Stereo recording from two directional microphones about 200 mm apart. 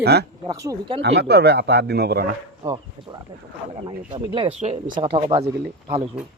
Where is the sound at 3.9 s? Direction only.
25° right (ahead or behind).